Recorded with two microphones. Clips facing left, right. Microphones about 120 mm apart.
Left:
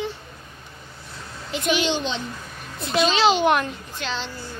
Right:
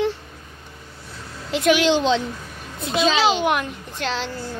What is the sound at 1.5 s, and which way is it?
Speech, 90° right.